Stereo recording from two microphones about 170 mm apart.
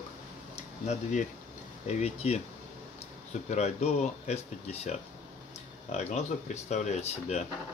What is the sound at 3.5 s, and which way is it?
Speech, 40° left (ahead or behind).